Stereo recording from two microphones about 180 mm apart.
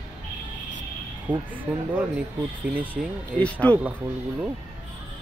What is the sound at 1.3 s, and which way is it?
Speech, 25° right (ahead or behind).